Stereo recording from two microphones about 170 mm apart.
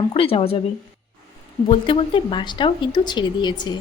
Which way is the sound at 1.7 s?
30° left (ahead or behind).